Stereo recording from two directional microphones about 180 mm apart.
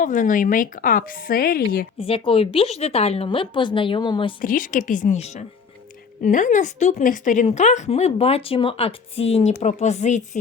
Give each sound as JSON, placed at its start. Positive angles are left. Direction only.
{"t": 0.0, "sound": "speech", "side_deg": 45}
{"t": 2.0, "sound": "speech", "side_deg": 30}
{"t": 4.4, "sound": "a woman's voice", "side_deg": 50}